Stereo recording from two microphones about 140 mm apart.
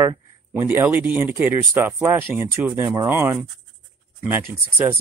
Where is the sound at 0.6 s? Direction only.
15° right (ahead or behind).